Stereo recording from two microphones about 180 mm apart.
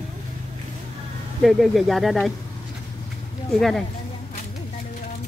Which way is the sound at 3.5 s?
Centre (ahead or behind).